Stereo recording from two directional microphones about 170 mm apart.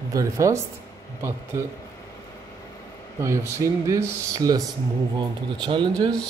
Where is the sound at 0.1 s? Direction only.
20° right (ahead or behind).